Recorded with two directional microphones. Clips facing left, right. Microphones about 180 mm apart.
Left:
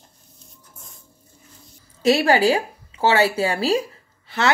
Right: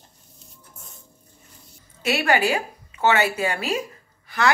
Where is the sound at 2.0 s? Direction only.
35° left (ahead or behind).